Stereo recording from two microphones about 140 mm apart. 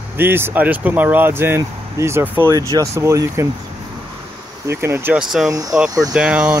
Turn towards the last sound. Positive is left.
turn(degrees=-10)  # may be behind; listen again after turning